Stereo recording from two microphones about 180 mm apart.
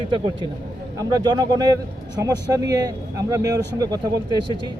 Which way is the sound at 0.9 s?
20° right (ahead or behind).